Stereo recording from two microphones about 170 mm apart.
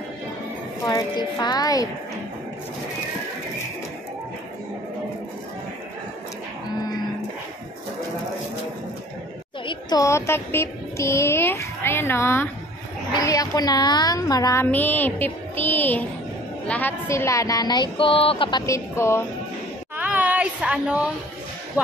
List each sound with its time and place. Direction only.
0.8 s a woman's voice: 25° left (ahead or behind)
9.7 s music: 25° left (ahead or behind)
13.1 s a woman's voice: 20° left (ahead or behind)
17.9 s a sound: 30° left (ahead or behind)
18.7 s music: 15° left (ahead or behind)
20.0 s a sound: 10° right (ahead or behind)